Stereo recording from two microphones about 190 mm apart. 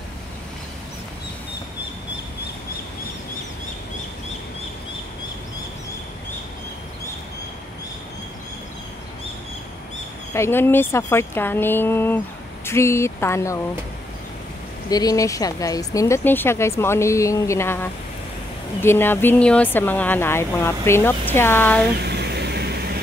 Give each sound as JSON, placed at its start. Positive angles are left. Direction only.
{"t": 10.3, "sound": "speech", "side_deg": 15}
{"t": 14.9, "sound": "speech", "side_deg": 20}
{"t": 22.0, "sound": "a sound", "side_deg": -60}